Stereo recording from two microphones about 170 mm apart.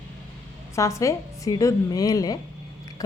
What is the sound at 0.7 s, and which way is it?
A woman's voice, 20° left (ahead or behind).